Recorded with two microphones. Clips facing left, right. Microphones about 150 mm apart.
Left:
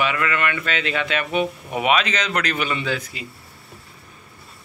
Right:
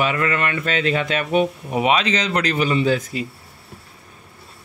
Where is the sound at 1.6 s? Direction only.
25° right (ahead or behind).